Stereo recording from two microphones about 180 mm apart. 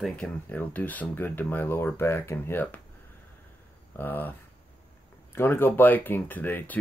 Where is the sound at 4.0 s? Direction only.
10° left (ahead or behind).